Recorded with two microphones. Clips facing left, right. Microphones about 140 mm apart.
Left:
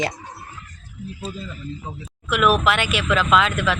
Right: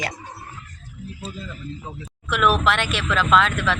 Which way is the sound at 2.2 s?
5° left (ahead or behind).